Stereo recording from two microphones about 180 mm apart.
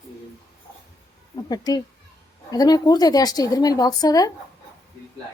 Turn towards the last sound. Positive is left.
turn(degrees=20)  # may be behind; listen again after turning